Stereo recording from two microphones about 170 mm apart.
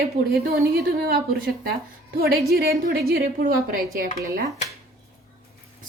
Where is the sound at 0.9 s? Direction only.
65° right (ahead or behind).